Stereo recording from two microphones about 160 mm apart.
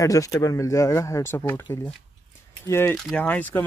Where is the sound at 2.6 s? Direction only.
15° left (ahead or behind).